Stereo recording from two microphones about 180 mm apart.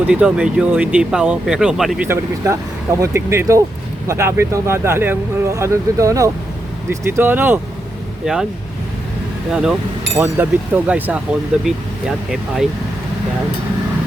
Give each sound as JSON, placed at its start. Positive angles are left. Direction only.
{"t": 0.1, "sound": "speech", "side_deg": -5}
{"t": 2.0, "sound": "speech", "side_deg": -15}
{"t": 9.5, "sound": "speech", "side_deg": -5}